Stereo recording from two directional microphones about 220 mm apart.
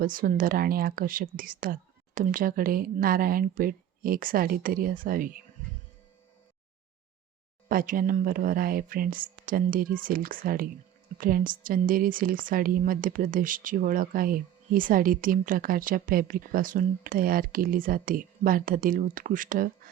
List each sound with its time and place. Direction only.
0.0 s speech: 40° right (ahead or behind)
7.7 s speech: 40° right (ahead or behind)